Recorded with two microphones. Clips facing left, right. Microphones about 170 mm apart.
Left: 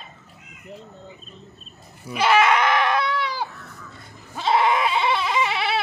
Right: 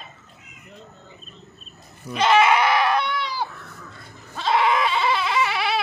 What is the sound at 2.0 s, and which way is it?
Goat, 10° left (ahead or behind).